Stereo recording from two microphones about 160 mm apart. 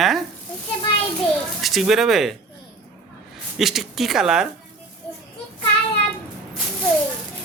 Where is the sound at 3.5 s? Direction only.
Centre (ahead or behind).